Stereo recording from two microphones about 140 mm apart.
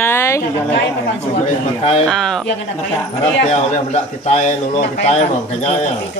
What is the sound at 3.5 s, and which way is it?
Speech, 50° left (ahead or behind).